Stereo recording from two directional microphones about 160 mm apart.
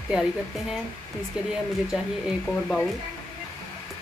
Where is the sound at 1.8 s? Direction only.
Centre (ahead or behind).